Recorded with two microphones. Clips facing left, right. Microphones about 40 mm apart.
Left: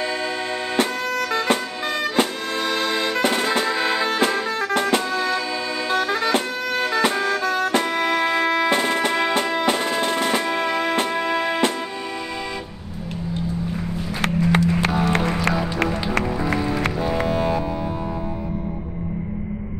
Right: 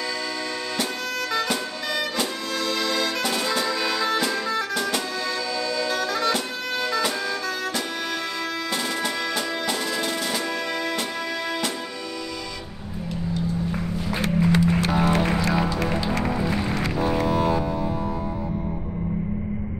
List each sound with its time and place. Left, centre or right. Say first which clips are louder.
0.0 s music: left 4 dB; left
14.2 s a sound: left 2 dB; left
14.9 s music: even; centre
15.5 s run: left 2 dB; left
16.2 s music: left 2 dB; left
17.3 s music: even; centre